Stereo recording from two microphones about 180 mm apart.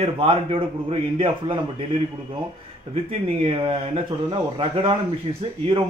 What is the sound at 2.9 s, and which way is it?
A man's voice, 35° right (ahead or behind).